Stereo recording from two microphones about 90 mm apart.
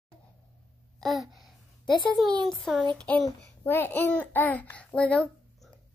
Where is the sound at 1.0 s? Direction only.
Centre (ahead or behind).